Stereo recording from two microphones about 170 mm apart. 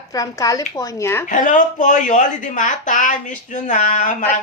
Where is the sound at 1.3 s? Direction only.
45° left (ahead or behind).